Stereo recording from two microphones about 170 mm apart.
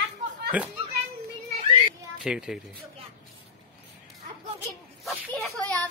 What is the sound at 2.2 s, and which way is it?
Speech, 5° right (ahead or behind).